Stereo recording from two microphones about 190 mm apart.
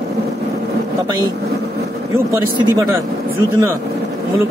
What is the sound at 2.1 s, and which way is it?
Speech, 15° right (ahead or behind).